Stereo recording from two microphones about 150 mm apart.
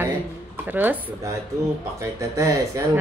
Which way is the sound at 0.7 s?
15° right (ahead or behind).